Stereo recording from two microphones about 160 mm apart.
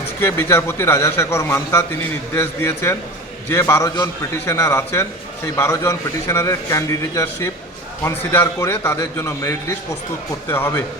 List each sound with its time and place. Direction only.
0.2 s a man's voice: 15° left (ahead or behind)